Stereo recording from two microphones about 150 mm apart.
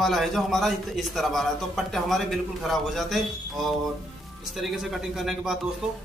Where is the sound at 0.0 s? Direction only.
Centre (ahead or behind).